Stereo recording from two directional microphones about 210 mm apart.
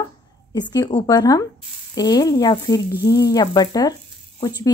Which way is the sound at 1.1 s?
20° left (ahead or behind).